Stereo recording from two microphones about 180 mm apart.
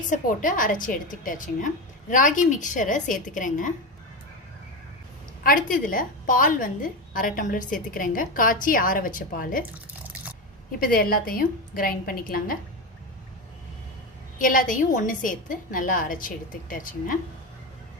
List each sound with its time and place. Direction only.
0.1 s a woman's voice: 50° left (ahead or behind)
5.4 s a woman's voice: 50° left (ahead or behind)
10.8 s a woman's voice: 55° left (ahead or behind)
14.3 s a woman's voice: 50° left (ahead or behind)